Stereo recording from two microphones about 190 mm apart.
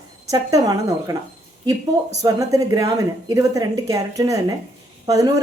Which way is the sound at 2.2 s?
15° right (ahead or behind).